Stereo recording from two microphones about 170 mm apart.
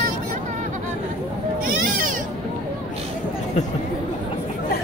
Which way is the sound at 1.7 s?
55° right (ahead or behind).